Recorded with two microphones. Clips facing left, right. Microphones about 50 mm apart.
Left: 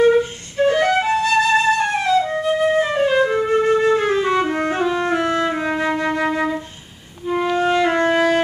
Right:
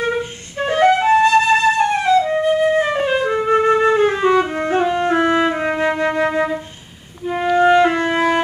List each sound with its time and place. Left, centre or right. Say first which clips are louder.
0.0 s flute: left 7 dB; centre
2.8 s music: left 1 dB; centre
3.5 s flute: right 2 dB; right
4.3 s music: right 2 dB; centre
4.7 s music: right 7 dB; centre
5.5 s music: right 2 dB; centre
7.2 s clarinet: right 4 dB; centre
8.1 s music: left 1 dB; centre